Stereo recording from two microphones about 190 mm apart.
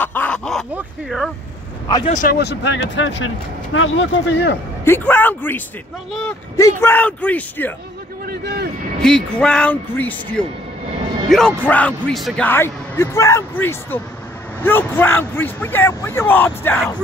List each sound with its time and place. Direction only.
0.0 s a sound: 10° left (ahead or behind)
0.7 s speech: centre (ahead or behind)
2.0 s speech: 40° left (ahead or behind)
2.3 s speech: 65° left (ahead or behind)
3.7 s speech: 90° left; by 4.6 s 65° left (ahead or behind)
4.8 s speech: 10° left (ahead or behind)
9.0 s speech: 5° left (ahead or behind)
12.4 s speech: 10° left (ahead or behind)